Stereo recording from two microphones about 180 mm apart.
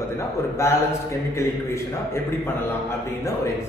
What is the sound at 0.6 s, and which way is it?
Speech, 15° left (ahead or behind).